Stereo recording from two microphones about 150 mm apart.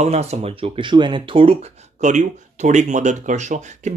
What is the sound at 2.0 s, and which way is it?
Speech, 55° right (ahead or behind).